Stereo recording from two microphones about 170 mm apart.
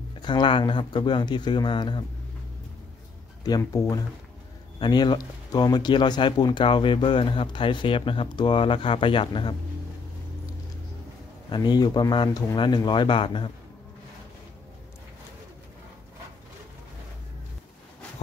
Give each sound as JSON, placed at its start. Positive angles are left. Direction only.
{"t": 0.2, "sound": "speech", "side_deg": 25}
{"t": 3.4, "sound": "speech", "side_deg": 20}
{"t": 11.5, "sound": "speech", "side_deg": 25}